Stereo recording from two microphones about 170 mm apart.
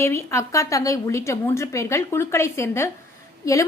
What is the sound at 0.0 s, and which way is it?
A woman's voice, 15° left (ahead or behind).